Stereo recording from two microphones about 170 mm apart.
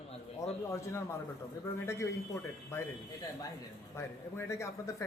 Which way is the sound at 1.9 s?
15° left (ahead or behind).